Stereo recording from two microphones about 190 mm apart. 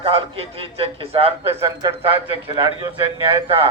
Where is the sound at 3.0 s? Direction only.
25° right (ahead or behind).